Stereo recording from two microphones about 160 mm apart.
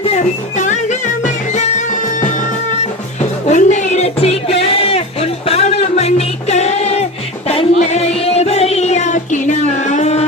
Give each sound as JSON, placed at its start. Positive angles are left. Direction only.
{"t": 0.0, "sound": "music", "side_deg": 45}
{"t": 3.4, "sound": "music", "side_deg": 45}